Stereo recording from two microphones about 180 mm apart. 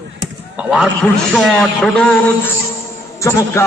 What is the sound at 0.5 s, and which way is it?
A man's voice, 5° right (ahead or behind).